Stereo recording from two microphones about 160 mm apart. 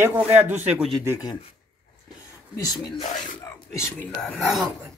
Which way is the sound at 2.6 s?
25° left (ahead or behind).